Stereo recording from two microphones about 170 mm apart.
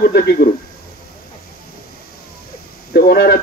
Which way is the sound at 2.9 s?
65° left (ahead or behind).